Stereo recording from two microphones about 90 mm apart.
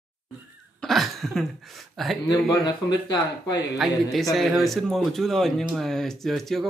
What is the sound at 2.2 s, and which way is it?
Speech, 50° left (ahead or behind).